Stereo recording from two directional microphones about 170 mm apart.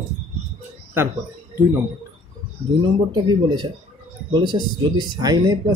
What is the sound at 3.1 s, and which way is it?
Speech, 25° right (ahead or behind).